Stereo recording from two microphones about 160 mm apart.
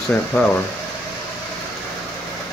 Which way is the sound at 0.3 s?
15° left (ahead or behind).